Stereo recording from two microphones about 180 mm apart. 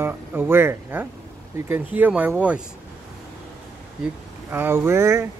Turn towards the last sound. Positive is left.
turn(degrees=-15)  # may be behind; listen again after turning